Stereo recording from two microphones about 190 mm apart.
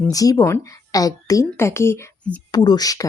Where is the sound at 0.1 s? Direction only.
20° left (ahead or behind).